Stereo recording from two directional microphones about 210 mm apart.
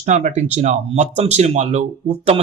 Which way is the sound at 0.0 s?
35° right (ahead or behind).